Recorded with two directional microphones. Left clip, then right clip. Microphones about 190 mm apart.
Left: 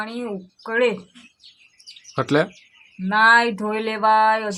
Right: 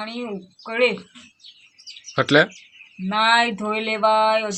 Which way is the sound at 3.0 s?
25° left (ahead or behind).